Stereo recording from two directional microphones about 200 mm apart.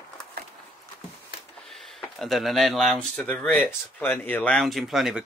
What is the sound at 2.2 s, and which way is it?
Speech, centre (ahead or behind).